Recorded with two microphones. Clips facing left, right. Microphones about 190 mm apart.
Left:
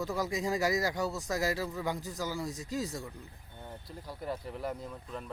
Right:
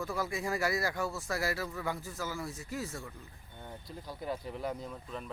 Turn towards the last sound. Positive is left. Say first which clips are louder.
# even
turn(degrees=5)  # may be behind; listen again after turning